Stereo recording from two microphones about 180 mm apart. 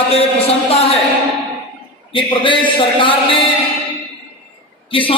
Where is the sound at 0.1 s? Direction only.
35° left (ahead or behind).